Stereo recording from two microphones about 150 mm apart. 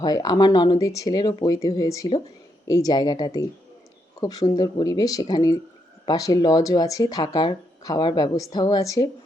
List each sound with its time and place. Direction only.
0.0 s speech: 25° left (ahead or behind)